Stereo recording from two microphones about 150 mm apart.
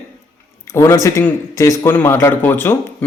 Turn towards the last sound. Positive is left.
turn(degrees=15)  # may be behind; listen again after turning